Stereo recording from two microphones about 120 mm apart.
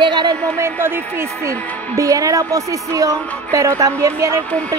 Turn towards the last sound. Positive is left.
turn(degrees=10)  # may be behind; listen again after turning